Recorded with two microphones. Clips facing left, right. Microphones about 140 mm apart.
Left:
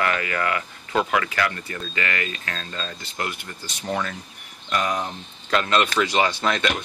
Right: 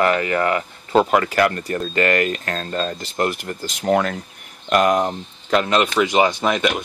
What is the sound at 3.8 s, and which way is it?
Speech, 65° right (ahead or behind).